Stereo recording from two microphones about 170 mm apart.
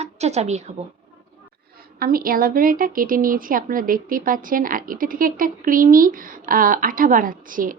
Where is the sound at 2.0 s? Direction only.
60° right (ahead or behind).